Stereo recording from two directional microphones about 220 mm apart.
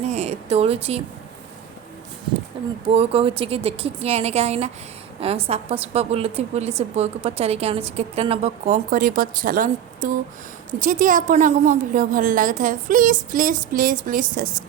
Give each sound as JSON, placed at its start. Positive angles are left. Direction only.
{"t": 0.0, "sound": "speech", "side_deg": -30}
{"t": 2.9, "sound": "a woman's voice", "side_deg": -25}